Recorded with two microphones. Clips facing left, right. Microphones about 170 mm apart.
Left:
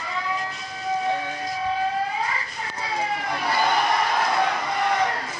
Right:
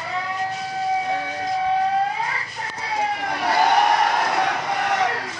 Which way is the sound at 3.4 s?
75° right (ahead or behind).